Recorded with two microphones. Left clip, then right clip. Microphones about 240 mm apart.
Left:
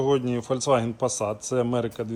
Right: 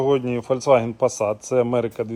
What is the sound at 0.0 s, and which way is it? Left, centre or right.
Speech, right.